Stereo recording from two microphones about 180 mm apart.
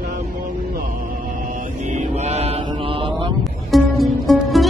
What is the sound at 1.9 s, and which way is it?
Mantra, 40° right (ahead or behind).